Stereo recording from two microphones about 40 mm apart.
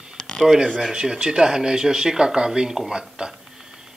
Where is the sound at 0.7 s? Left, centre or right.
Centre.